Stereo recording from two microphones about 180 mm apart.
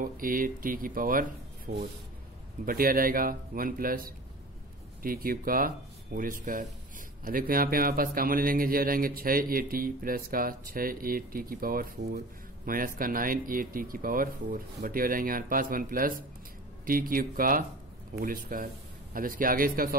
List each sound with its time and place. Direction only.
0.0 s speech: 50° right (ahead or behind)